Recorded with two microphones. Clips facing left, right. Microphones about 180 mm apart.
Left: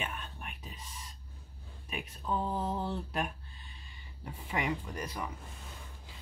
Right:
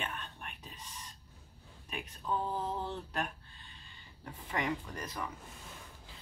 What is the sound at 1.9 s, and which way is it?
Speech, 10° left (ahead or behind).